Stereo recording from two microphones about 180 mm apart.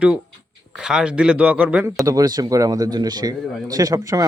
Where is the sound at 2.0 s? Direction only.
20° right (ahead or behind).